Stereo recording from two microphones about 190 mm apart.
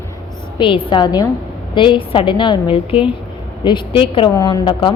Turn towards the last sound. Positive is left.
turn(degrees=25)  # may be behind; listen again after turning